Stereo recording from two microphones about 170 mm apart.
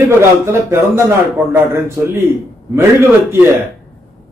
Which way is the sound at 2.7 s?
15° right (ahead or behind).